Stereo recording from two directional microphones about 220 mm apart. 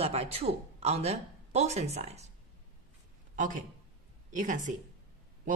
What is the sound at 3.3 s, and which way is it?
A man's voice, 35° right (ahead or behind).